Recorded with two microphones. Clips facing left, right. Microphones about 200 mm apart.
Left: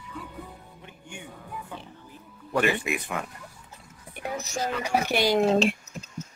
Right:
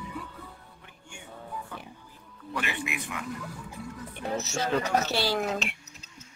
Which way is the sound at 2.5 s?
45° left (ahead or behind).